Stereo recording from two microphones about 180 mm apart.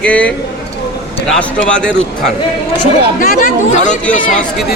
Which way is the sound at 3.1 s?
45° left (ahead or behind).